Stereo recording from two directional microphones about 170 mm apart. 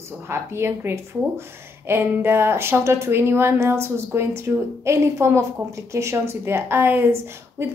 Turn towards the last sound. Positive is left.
turn(degrees=-15)  # may be behind; listen again after turning